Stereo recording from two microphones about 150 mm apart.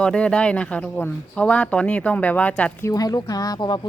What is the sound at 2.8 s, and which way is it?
Speech, 25° left (ahead or behind).